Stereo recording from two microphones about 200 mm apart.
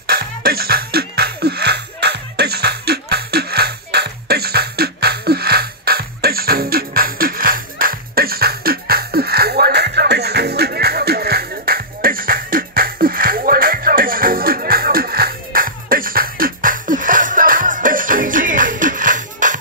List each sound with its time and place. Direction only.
0.0 s music: 50° right (ahead or behind)